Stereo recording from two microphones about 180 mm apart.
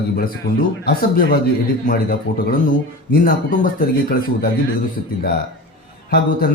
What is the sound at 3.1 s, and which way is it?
A man's voice, 55° left (ahead or behind).